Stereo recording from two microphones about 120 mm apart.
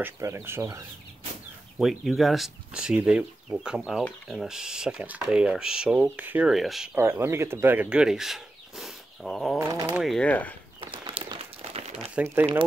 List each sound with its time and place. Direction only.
0.0 s speech: 20° right (ahead or behind)
1.8 s speech: 5° right (ahead or behind)
6.5 s speech: centre (ahead or behind)
7.0 s speech: 20° right (ahead or behind); by 9.6 s centre (ahead or behind)
9.6 s speech: 25° right (ahead or behind)
10.0 s speech: 5° left (ahead or behind)
10.8 s crumpling: 45° right (ahead or behind)